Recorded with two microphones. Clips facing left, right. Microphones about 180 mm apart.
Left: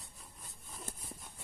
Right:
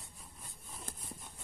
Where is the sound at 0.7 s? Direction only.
Centre (ahead or behind).